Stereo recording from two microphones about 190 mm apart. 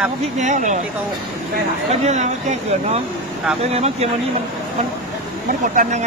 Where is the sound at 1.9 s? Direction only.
35° right (ahead or behind).